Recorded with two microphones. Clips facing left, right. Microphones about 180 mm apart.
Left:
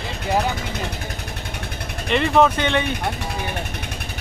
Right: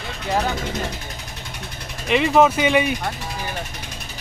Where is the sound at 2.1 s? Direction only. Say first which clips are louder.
Right 1 dB; 5° right (ahead or behind).